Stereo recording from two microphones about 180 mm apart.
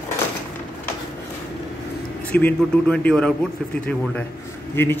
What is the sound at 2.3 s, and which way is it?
A man's voice, 10° left (ahead or behind).